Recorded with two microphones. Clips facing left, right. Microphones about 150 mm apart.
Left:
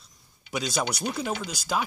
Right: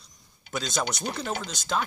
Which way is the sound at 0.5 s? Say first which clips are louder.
Left 1 dB; 10° left (ahead or behind).